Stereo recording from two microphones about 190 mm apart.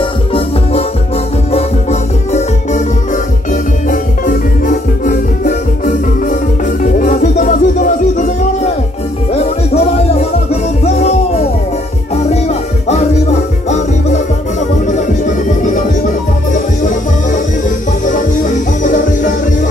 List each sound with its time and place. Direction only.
1.5 s music: 35° left (ahead or behind)
3.9 s music: 45° left (ahead or behind)
15.6 s music: 45° left (ahead or behind)